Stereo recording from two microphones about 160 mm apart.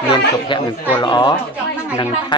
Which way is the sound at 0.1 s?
30° left (ahead or behind).